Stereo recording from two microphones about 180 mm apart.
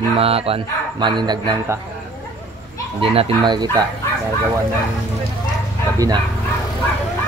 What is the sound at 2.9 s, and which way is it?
Speech, 30° right (ahead or behind).